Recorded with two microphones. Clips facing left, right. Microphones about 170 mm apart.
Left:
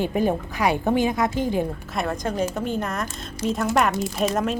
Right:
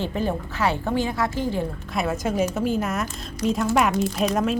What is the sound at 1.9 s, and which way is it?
Speech, 5° right (ahead or behind).